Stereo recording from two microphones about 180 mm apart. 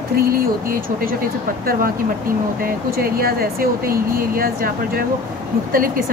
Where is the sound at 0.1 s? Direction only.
55° right (ahead or behind).